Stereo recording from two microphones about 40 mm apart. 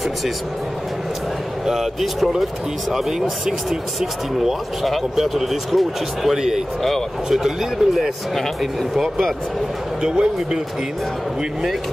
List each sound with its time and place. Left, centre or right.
1.7 s speech: centre
10.0 s speech: centre